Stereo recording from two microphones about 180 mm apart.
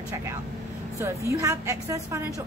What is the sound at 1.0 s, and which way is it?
A woman's voice, 15° right (ahead or behind).